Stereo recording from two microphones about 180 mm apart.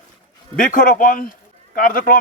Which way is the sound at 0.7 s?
50° left (ahead or behind).